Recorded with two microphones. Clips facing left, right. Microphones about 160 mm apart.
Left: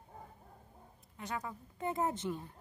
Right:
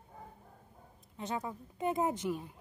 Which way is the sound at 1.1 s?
25° right (ahead or behind).